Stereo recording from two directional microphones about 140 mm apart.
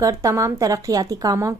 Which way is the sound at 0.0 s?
20° right (ahead or behind).